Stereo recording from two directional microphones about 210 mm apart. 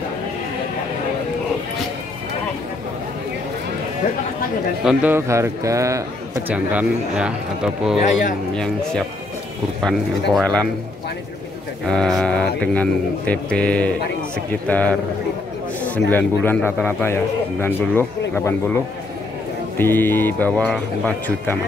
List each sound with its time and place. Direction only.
4.8 s a man's voice: 10° right (ahead or behind)
9.8 s speech: 5° left (ahead or behind)
11.9 s a man's voice: centre (ahead or behind)
16.1 s a man's voice: 5° left (ahead or behind)
19.8 s a man's voice: 10° left (ahead or behind)